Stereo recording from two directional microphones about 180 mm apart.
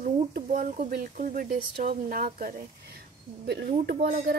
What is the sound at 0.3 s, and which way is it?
Speech, 45° right (ahead or behind).